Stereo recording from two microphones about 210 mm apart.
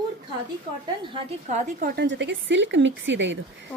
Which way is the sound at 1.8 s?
45° right (ahead or behind).